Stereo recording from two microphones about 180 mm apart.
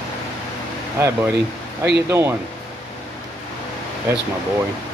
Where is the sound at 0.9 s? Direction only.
15° right (ahead or behind).